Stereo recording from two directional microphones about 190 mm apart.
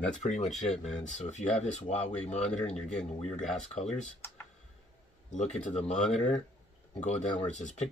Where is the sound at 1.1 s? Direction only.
40° left (ahead or behind).